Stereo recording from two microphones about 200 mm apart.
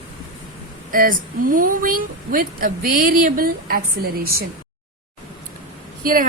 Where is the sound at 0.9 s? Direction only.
45° right (ahead or behind).